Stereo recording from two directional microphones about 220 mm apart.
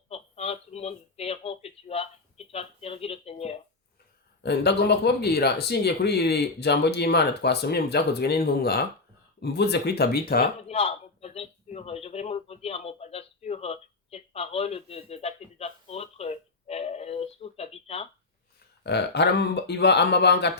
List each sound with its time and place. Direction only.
0.1 s speech: 30° left (ahead or behind)
4.4 s speech: 50° left (ahead or behind)
10.7 s a man's voice: 30° left (ahead or behind)
18.8 s speech: 50° left (ahead or behind)